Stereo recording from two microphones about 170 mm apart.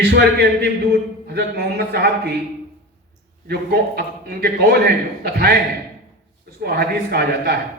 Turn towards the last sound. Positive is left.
turn(degrees=-70)  # may be behind; listen again after turning